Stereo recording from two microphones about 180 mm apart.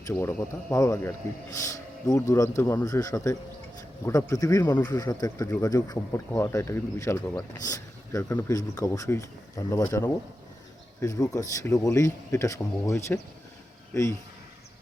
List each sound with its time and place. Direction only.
0.1 s speech: 10° left (ahead or behind)